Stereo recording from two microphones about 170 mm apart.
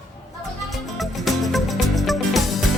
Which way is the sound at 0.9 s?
Centre (ahead or behind).